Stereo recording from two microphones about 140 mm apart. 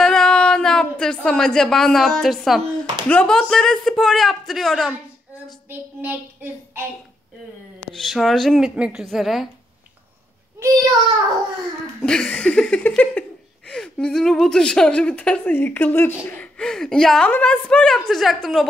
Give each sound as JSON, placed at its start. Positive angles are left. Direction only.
{"t": 0.0, "sound": "a woman's voice", "side_deg": 5}
{"t": 5.7, "sound": "child singing", "side_deg": -15}
{"t": 7.9, "sound": "a woman's voice", "side_deg": 0}
{"t": 10.6, "sound": "a child's voice", "side_deg": -25}
{"t": 12.0, "sound": "a woman's voice", "side_deg": 5}